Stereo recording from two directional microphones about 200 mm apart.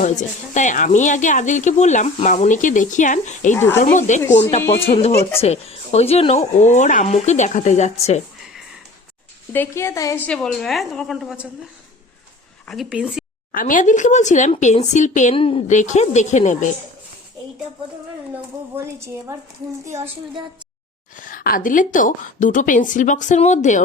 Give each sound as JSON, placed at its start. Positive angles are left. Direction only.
{"t": 0.0, "sound": "speech", "side_deg": 40}
{"t": 3.5, "sound": "speech", "side_deg": 10}
{"t": 3.8, "sound": "speech", "side_deg": 40}
{"t": 5.4, "sound": "speech", "side_deg": 30}
{"t": 9.5, "sound": "a woman's voice", "side_deg": 10}
{"t": 12.6, "sound": "speech", "side_deg": 0}
{"t": 13.5, "sound": "speech", "side_deg": 45}
{"t": 18.9, "sound": "a woman's voice", "side_deg": -15}
{"t": 21.2, "sound": "speech", "side_deg": 40}